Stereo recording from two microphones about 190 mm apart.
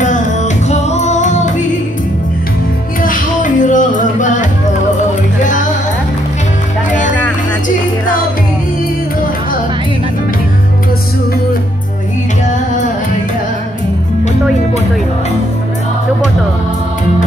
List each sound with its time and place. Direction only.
0.7 s music: 35° left (ahead or behind)
3.0 s music: 45° left (ahead or behind)